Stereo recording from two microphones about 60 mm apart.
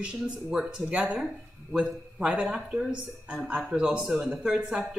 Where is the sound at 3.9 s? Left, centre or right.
Centre.